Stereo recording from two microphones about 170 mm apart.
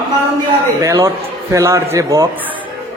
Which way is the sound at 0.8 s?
15° right (ahead or behind).